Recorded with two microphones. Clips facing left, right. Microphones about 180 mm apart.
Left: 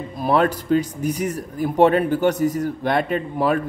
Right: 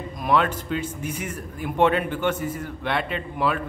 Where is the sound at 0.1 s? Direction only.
35° left (ahead or behind).